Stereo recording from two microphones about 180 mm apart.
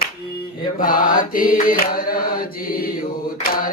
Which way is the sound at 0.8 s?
50° left (ahead or behind).